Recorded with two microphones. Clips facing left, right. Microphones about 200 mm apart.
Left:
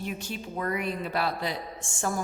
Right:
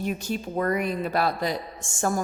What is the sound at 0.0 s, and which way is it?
A woman's voice, 45° right (ahead or behind).